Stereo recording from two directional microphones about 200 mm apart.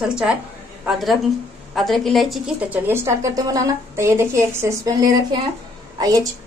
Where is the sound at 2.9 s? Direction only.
15° right (ahead or behind).